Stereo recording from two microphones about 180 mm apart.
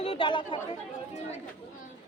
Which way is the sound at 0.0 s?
30° left (ahead or behind).